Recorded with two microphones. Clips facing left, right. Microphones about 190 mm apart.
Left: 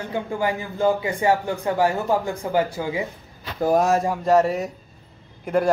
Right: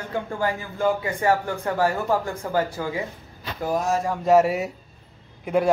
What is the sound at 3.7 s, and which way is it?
Speech, 65° left (ahead or behind).